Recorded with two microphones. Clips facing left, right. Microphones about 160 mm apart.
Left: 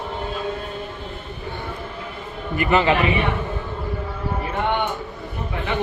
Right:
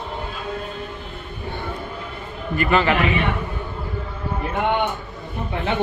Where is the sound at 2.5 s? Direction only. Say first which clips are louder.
Left 1 dB; 20° left (ahead or behind).